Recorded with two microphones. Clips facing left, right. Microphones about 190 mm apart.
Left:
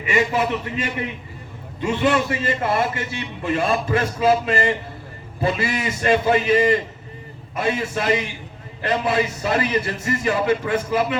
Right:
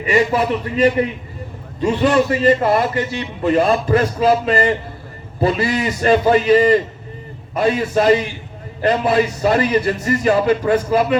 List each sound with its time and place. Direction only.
0.0 s a man's voice: 35° right (ahead or behind)